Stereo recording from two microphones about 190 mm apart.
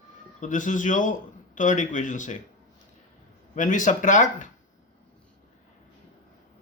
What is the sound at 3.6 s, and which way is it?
Speech, 45° left (ahead or behind).